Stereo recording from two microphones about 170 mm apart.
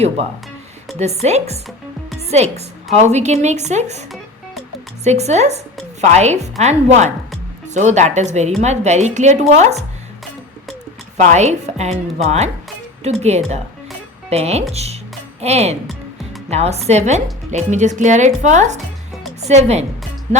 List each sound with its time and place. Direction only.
0.9 s a woman's voice: 40° right (ahead or behind)
5.0 s a woman's voice: 40° right (ahead or behind)
11.2 s a woman's voice: 45° right (ahead or behind)